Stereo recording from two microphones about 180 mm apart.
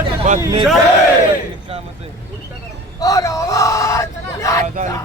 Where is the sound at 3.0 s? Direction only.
20° left (ahead or behind).